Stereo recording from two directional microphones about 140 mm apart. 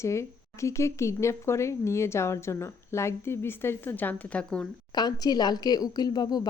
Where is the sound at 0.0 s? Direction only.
20° left (ahead or behind).